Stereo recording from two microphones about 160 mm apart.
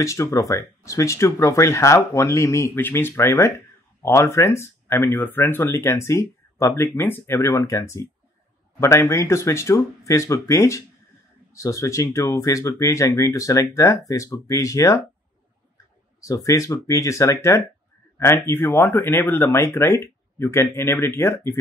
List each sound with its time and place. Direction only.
0.0 s speech: 20° left (ahead or behind)
16.2 s speech: 20° left (ahead or behind)